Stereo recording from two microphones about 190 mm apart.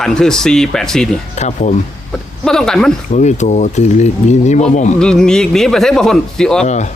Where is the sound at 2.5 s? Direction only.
5° left (ahead or behind).